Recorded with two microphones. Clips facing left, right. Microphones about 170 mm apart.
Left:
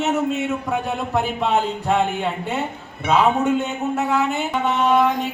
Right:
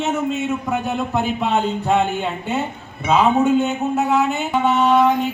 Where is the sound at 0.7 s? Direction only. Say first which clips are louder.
Right 2 dB; centre (ahead or behind).